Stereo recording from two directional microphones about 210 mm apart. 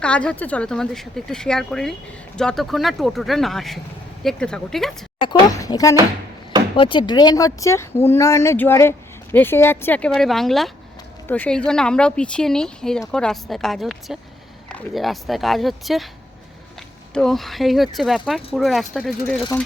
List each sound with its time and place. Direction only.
0.0 s speech: 5° left (ahead or behind)
5.2 s speech: 20° left (ahead or behind); by 16.0 s centre (ahead or behind)
17.2 s speech: centre (ahead or behind)